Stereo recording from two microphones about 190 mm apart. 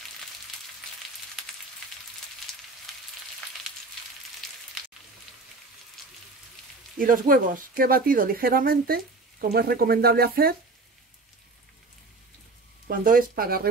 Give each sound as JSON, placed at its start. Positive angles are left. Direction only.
{"t": 7.0, "sound": "speech", "side_deg": -50}
{"t": 12.8, "sound": "speech", "side_deg": -50}